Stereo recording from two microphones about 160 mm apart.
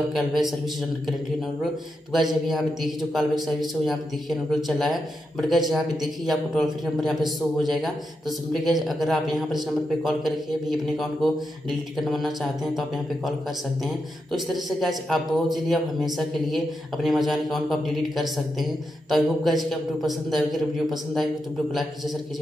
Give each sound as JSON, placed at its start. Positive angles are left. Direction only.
{"t": 0.1, "sound": "speech", "side_deg": 0}
{"t": 2.4, "sound": "speech", "side_deg": 0}